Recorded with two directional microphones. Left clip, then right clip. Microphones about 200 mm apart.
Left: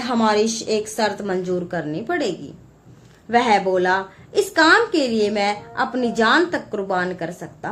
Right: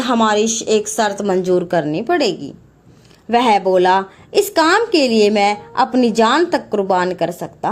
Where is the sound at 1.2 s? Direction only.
40° right (ahead or behind).